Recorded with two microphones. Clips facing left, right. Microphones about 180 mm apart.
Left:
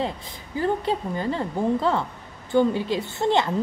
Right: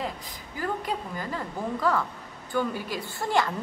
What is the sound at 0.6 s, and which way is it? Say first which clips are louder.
Speech: left 7 dB; 25° left (ahead or behind).